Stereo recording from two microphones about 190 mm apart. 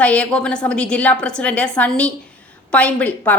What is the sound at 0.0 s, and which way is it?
A woman's voice, 5° left (ahead or behind).